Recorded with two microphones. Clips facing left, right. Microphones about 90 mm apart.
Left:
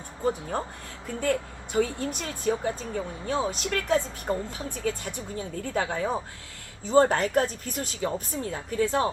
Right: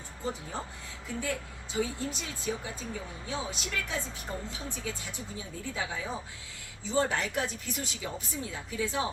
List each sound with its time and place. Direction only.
0.3 s speech: 50° left (ahead or behind)